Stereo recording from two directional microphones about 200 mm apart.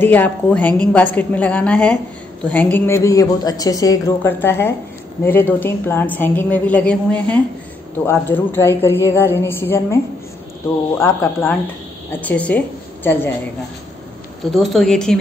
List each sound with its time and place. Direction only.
0.0 s a woman's voice: 10° left (ahead or behind)
11.0 s a woman's voice: 15° left (ahead or behind)
14.5 s speech: centre (ahead or behind)